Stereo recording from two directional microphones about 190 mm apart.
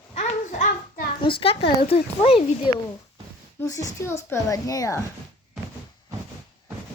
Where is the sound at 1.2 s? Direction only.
30° left (ahead or behind).